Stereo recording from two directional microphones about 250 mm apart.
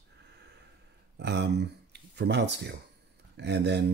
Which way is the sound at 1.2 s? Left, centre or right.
Right.